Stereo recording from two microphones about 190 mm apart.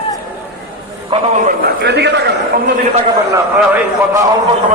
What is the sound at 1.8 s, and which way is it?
Speech, 60° right (ahead or behind).